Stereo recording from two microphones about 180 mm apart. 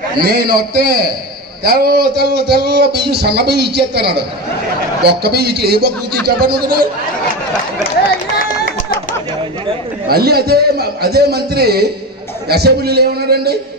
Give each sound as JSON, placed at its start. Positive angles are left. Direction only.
{"t": 0.2, "sound": "speech", "side_deg": -55}
{"t": 10.0, "sound": "speech", "side_deg": -60}